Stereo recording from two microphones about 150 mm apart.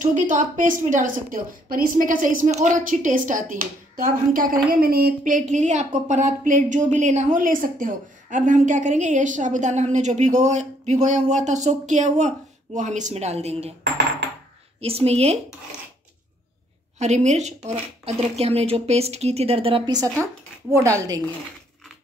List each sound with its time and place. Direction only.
0.0 s a woman's voice: 55° right (ahead or behind)
14.8 s speech: 40° right (ahead or behind)
17.0 s speech: 50° right (ahead or behind)
19.9 s a woman's voice: 25° right (ahead or behind)